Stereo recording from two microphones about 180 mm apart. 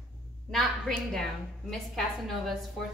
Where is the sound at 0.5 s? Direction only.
Centre (ahead or behind).